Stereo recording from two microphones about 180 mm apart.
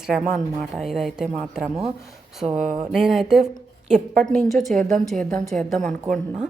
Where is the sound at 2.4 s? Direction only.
40° right (ahead or behind).